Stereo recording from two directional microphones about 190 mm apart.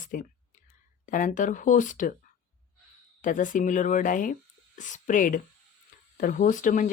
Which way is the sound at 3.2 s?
45° left (ahead or behind).